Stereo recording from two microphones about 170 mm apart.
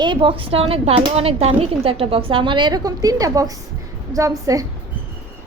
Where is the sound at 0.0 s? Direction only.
30° right (ahead or behind).